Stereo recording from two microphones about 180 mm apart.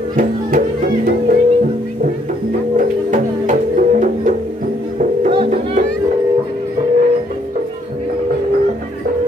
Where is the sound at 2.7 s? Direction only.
45° right (ahead or behind).